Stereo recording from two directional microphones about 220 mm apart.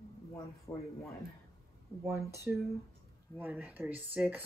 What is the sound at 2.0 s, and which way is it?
Speech, 15° right (ahead or behind).